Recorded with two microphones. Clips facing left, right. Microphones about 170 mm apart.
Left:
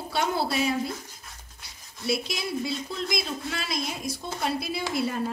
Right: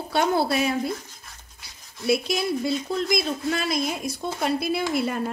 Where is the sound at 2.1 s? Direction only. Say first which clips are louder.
Right 6 dB; 55° right (ahead or behind).